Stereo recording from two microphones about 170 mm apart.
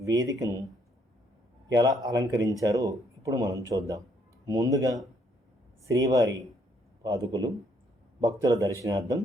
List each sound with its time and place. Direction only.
0.0 s speech: 20° right (ahead or behind)
1.7 s speech: 20° right (ahead or behind)